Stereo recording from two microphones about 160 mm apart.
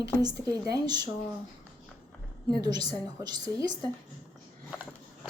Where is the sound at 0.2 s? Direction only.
25° right (ahead or behind).